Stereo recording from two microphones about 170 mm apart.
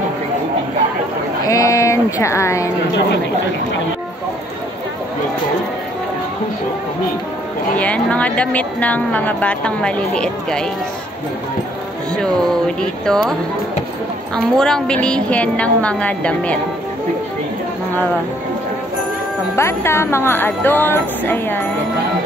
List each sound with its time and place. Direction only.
1.4 s speech: 20° left (ahead or behind)
7.7 s a woman's voice: 10° left (ahead or behind)
12.2 s a woman's voice: 5° left (ahead or behind)
19.5 s a woman's voice: 15° left (ahead or behind)